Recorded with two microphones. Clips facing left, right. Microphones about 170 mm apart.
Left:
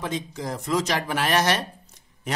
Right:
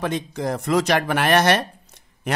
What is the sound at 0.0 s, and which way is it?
Speech, 65° right (ahead or behind).